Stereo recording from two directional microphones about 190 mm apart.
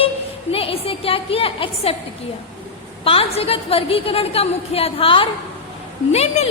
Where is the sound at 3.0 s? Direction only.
30° left (ahead or behind).